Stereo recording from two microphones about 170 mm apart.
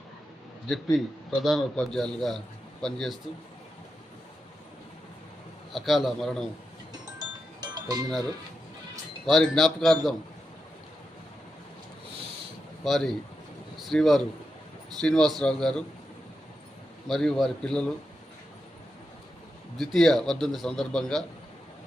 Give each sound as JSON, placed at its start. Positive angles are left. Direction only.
{"t": 0.9, "sound": "a man's voice", "side_deg": 0}
{"t": 5.7, "sound": "a man's voice", "side_deg": 0}
{"t": 7.2, "sound": "music", "side_deg": -25}
{"t": 9.2, "sound": "a man's voice", "side_deg": 0}
{"t": 12.8, "sound": "a man's voice", "side_deg": 0}
{"t": 17.1, "sound": "a man's voice", "side_deg": 0}
{"t": 19.7, "sound": "a man's voice", "side_deg": 0}